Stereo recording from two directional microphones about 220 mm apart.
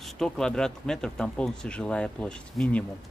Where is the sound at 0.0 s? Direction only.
Centre (ahead or behind).